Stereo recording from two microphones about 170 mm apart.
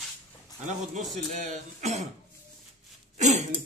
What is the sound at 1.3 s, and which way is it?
Speech, 45° right (ahead or behind).